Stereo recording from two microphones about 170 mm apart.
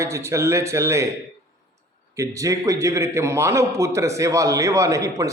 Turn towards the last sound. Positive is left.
turn(degrees=-20)  # may be behind; listen again after turning